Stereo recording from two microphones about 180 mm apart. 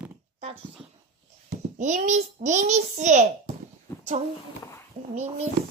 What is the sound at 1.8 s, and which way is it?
A child's voice, 40° right (ahead or behind).